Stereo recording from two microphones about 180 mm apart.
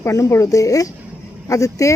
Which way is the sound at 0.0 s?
15° left (ahead or behind).